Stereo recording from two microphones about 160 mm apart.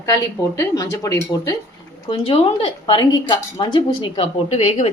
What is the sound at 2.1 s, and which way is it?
A woman's voice, 40° left (ahead or behind).